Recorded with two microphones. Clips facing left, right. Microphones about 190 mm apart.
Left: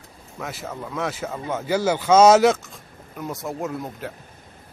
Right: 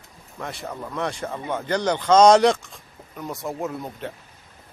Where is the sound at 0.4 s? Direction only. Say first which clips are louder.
Even; 5° left (ahead or behind).